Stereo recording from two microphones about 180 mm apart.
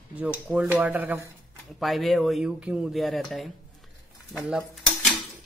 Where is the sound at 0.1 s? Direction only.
5° right (ahead or behind).